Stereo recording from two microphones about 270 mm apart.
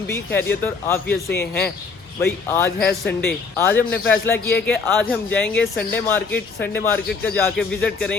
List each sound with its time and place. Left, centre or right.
0.1 s speech: centre
1.3 s speech: left
2.2 s speech: centre